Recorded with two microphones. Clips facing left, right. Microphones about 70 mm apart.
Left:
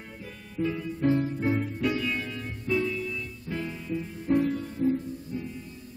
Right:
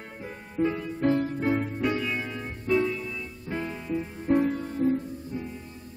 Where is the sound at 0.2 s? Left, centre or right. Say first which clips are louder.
Right 4 dB; right.